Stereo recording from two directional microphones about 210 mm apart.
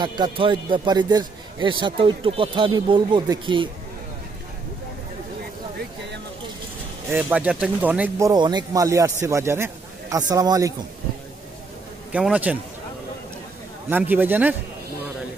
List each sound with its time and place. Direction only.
0.0 s a man's voice: 20° right (ahead or behind)
7.1 s a man's voice: 5° right (ahead or behind)
12.1 s a man's voice: 5° right (ahead or behind)
13.8 s speech: 10° right (ahead or behind)